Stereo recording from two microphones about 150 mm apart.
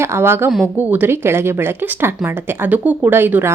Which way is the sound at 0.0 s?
15° right (ahead or behind).